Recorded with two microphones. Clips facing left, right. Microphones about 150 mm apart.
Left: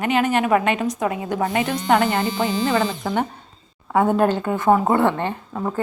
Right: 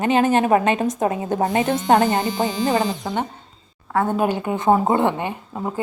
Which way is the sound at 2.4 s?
40° right (ahead or behind).